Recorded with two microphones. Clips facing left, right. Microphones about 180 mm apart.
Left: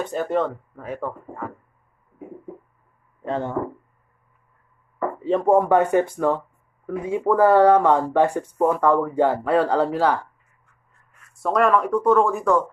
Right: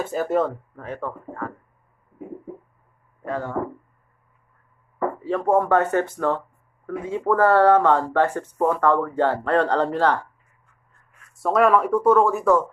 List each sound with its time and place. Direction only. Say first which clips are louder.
0.0 s speech: right 1 dB; 5° right (ahead or behind)
0.8 s speech: left 1 dB; 10° left (ahead or behind)
3.3 s speech: left 2 dB; 25° left (ahead or behind)
5.2 s speech: left 3 dB; 20° left (ahead or behind); by 12.6 s centre (ahead or behind)